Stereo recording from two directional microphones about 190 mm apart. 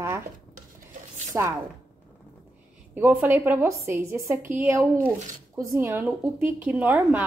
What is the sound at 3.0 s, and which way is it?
A woman's voice, 10° right (ahead or behind).